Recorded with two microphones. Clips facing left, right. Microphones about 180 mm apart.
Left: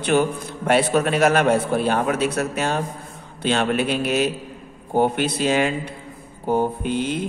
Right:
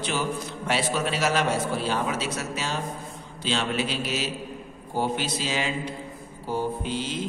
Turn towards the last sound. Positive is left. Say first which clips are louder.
# left 6 dB
turn(degrees=55)  # may be behind; listen again after turning